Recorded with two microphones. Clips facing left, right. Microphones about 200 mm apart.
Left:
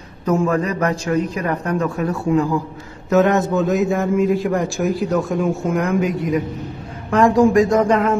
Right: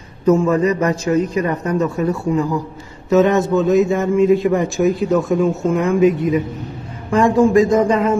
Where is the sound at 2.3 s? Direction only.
15° right (ahead or behind).